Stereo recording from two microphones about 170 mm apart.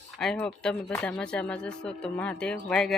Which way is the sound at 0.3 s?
5° left (ahead or behind).